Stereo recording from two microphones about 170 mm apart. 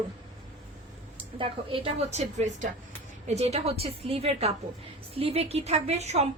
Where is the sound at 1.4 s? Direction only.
30° right (ahead or behind).